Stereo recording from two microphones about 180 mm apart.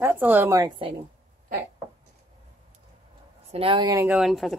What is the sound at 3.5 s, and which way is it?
Speech, 30° right (ahead or behind).